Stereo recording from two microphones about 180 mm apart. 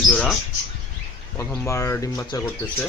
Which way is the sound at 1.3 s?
15° left (ahead or behind).